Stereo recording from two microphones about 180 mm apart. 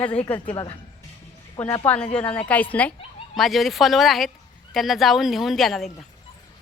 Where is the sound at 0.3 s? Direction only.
10° left (ahead or behind).